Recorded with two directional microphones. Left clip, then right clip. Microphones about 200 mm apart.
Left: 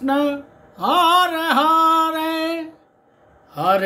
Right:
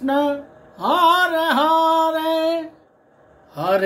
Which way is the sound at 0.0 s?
15° left (ahead or behind).